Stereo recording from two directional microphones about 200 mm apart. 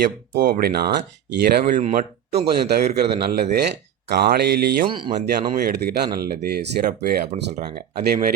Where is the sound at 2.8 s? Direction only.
30° right (ahead or behind).